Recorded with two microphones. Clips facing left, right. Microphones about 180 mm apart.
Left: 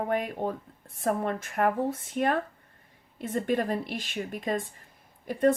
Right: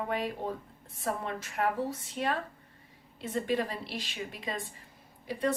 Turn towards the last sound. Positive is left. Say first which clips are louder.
# left 7 dB
turn(degrees=50)  # may be behind; listen again after turning